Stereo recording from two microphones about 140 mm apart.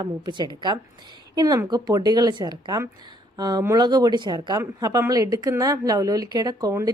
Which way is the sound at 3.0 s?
30° right (ahead or behind).